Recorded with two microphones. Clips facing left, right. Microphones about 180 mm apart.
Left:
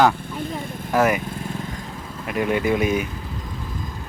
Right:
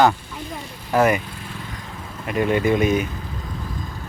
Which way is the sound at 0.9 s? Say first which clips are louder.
Right 1 dB; 5° left (ahead or behind).